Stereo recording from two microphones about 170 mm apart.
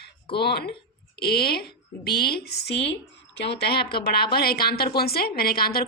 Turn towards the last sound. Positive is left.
turn(degrees=65)  # may be behind; listen again after turning